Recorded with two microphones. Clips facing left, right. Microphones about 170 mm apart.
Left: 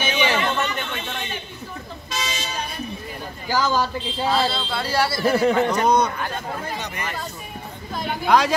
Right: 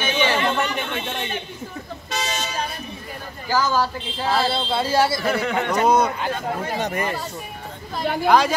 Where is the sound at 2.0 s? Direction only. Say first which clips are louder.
Right 2 dB; 60° right (ahead or behind).